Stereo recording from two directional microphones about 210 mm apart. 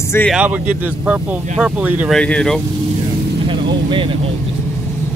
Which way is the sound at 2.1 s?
5° left (ahead or behind).